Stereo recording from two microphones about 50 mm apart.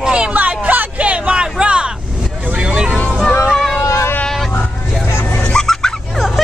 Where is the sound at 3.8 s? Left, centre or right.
Left.